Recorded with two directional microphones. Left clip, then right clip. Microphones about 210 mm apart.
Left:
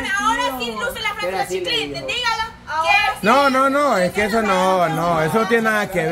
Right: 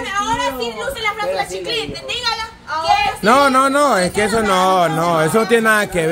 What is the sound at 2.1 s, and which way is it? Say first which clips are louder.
Speech: even; 5° left (ahead or behind).